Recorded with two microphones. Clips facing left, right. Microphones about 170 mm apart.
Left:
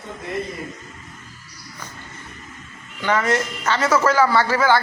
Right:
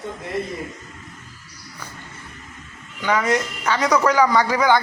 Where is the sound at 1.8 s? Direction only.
10° right (ahead or behind).